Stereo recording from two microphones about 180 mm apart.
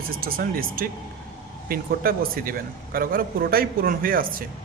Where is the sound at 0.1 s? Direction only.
55° right (ahead or behind).